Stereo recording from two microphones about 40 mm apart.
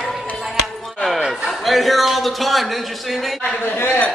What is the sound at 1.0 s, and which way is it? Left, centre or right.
A man's voice, centre.